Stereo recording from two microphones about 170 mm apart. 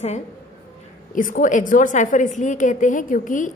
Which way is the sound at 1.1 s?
50° left (ahead or behind).